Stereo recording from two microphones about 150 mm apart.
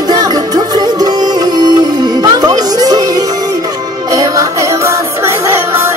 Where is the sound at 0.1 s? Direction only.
25° right (ahead or behind).